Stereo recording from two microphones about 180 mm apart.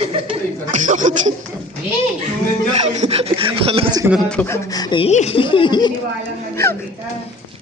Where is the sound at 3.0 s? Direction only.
35° right (ahead or behind).